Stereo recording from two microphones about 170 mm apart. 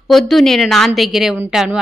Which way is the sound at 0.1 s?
Centre (ahead or behind).